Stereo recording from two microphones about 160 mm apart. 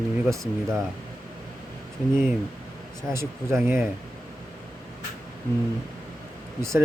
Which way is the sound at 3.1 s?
15° right (ahead or behind).